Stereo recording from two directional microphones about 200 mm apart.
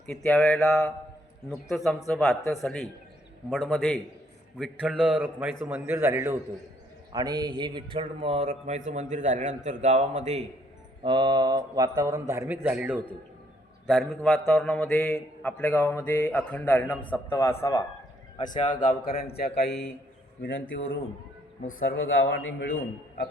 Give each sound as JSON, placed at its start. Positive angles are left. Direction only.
{"t": 0.0, "sound": "a man's voice", "side_deg": 5}
{"t": 11.0, "sound": "mantra", "side_deg": -25}
{"t": 12.3, "sound": "a man's voice", "side_deg": -15}
{"t": 18.4, "sound": "a man's voice", "side_deg": 40}
{"t": 19.5, "sound": "a man's voice", "side_deg": 60}
{"t": 20.5, "sound": "a man's voice", "side_deg": 70}